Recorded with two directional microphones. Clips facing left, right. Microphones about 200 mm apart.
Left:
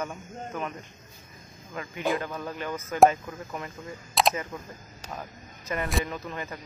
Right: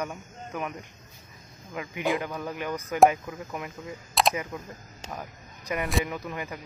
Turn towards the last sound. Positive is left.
turn(degrees=-10)  # may be behind; listen again after turning